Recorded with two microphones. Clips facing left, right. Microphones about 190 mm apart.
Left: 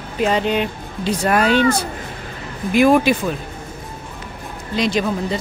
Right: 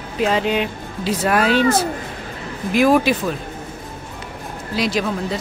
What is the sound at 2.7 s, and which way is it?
Speech, centre (ahead or behind).